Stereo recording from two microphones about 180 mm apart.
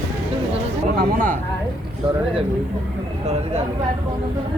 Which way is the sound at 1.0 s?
50° right (ahead or behind).